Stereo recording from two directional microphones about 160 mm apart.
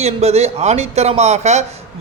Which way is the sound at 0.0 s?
40° right (ahead or behind).